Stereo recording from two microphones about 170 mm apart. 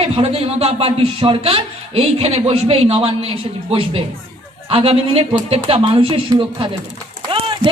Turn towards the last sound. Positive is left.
turn(degrees=-30)  # may be behind; listen again after turning